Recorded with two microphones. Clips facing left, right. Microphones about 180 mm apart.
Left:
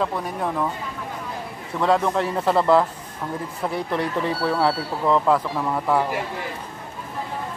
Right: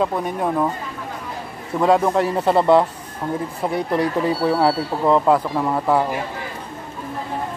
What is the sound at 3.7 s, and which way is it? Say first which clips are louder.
Speech: right 4 dB; centre (ahead or behind).